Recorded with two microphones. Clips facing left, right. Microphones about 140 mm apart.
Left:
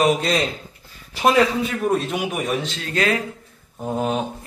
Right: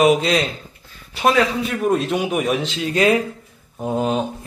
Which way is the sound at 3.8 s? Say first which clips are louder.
Right 2 dB; centre (ahead or behind).